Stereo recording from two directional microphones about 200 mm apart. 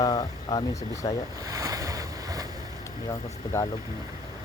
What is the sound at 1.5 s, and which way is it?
Boat, 15° right (ahead or behind).